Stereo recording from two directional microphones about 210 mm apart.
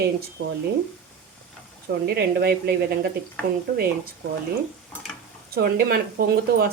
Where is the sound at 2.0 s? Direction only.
50° right (ahead or behind).